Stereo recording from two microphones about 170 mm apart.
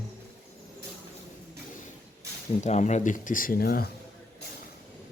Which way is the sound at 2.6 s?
45° left (ahead or behind).